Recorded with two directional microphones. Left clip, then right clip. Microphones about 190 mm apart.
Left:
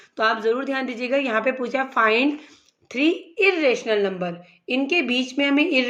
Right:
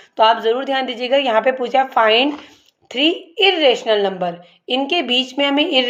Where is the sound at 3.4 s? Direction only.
40° left (ahead or behind).